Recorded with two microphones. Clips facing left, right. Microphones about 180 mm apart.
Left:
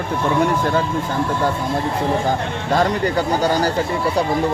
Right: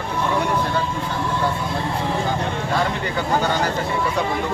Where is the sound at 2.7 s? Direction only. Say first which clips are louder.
Left 8 dB; 40° left (ahead or behind).